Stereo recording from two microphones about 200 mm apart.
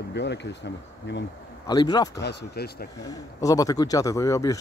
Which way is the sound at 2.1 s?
55° left (ahead or behind).